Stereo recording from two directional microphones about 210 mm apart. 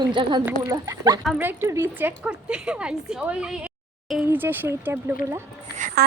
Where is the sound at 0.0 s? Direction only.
20° right (ahead or behind).